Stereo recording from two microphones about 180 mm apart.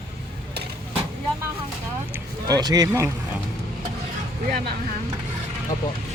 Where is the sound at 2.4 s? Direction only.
20° right (ahead or behind).